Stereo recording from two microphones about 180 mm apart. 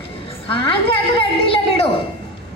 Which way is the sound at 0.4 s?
30° left (ahead or behind).